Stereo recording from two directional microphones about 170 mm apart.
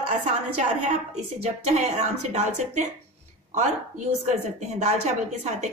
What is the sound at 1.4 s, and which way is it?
A woman's voice, 40° right (ahead or behind).